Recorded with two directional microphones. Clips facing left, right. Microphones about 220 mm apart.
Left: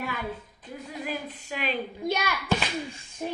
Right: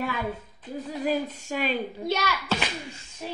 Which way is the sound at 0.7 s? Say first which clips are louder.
Right 7 dB; 40° right (ahead or behind).